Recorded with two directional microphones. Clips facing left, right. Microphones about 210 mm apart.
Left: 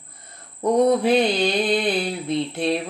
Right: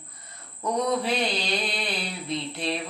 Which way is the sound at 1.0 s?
50° left (ahead or behind).